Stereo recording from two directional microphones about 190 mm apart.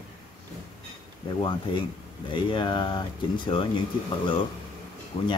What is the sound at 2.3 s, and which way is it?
Speech, 25° left (ahead or behind).